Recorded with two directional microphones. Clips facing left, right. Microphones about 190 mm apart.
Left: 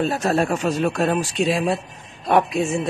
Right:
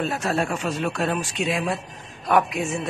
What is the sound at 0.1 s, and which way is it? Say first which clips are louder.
Speech: left 4 dB; 40° left (ahead or behind).